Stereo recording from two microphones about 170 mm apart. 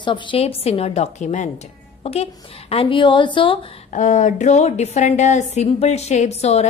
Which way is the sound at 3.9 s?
45° left (ahead or behind).